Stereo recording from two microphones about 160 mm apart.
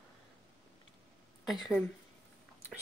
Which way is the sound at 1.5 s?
Centre (ahead or behind).